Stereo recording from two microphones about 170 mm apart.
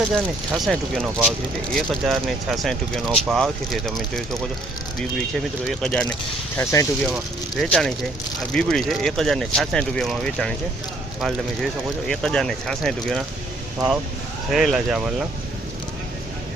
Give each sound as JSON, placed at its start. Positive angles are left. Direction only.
{"t": 0.1, "sound": "speech", "side_deg": 0}
{"t": 5.6, "sound": "speech", "side_deg": 5}
{"t": 6.6, "sound": "speech", "side_deg": 15}
{"t": 7.5, "sound": "speech", "side_deg": 0}